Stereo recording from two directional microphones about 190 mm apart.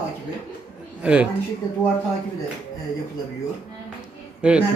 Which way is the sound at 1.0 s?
5° right (ahead or behind).